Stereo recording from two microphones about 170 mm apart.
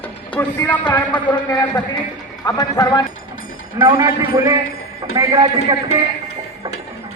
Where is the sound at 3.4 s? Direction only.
55° left (ahead or behind).